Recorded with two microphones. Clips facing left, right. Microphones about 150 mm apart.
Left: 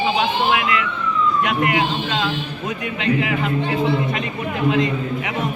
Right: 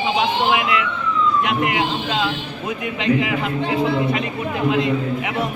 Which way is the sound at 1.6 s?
10° right (ahead or behind).